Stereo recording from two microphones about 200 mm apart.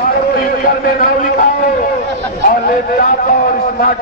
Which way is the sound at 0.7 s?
45° left (ahead or behind).